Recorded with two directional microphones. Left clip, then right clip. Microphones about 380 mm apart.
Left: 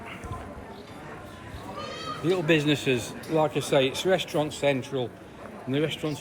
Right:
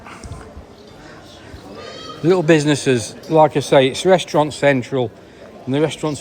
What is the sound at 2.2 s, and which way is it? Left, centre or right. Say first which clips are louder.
Speech: right 10 dB; right.